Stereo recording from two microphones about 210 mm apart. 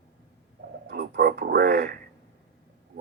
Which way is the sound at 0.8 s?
50° right (ahead or behind).